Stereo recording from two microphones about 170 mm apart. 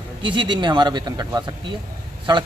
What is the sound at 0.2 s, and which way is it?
A man's voice, 30° right (ahead or behind).